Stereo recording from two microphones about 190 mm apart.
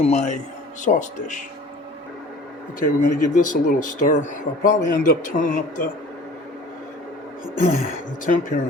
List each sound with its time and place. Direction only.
0.0 s speech: 35° left (ahead or behind)
2.8 s speech: 40° left (ahead or behind)
8.2 s speech: 45° left (ahead or behind)